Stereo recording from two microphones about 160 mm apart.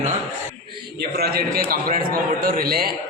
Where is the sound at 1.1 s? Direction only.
75° right (ahead or behind).